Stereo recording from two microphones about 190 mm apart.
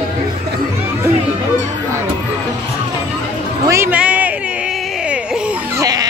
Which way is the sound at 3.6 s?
15° right (ahead or behind).